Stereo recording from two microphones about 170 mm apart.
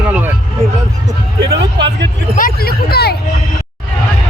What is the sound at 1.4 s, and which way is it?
Speech, 90° right.